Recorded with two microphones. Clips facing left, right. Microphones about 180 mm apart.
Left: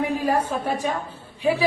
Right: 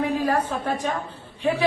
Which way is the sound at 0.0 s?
10° left (ahead or behind).